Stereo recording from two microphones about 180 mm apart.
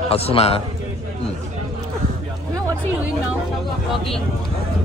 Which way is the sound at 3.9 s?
Centre (ahead or behind).